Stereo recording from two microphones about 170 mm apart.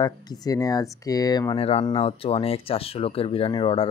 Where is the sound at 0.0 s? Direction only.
25° left (ahead or behind).